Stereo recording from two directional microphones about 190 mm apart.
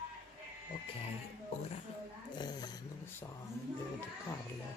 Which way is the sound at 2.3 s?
20° left (ahead or behind).